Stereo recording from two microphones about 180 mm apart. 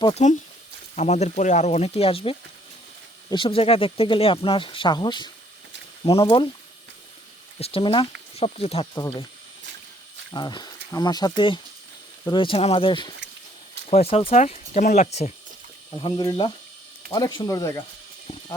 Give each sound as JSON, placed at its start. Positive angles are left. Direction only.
{"t": 0.0, "sound": "speech", "side_deg": 35}
{"t": 7.6, "sound": "speech", "side_deg": 30}
{"t": 9.0, "sound": "speech", "side_deg": 20}
{"t": 10.3, "sound": "speech", "side_deg": 25}